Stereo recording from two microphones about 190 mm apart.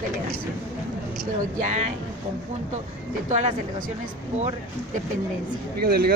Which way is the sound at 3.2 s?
35° right (ahead or behind).